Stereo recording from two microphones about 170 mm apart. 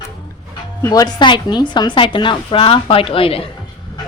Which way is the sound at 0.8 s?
20° left (ahead or behind).